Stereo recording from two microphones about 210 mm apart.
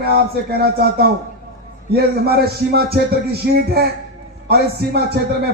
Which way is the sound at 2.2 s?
50° right (ahead or behind).